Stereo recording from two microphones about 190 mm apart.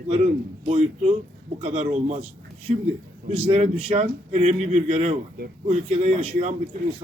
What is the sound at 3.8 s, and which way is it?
Speech, 35° right (ahead or behind).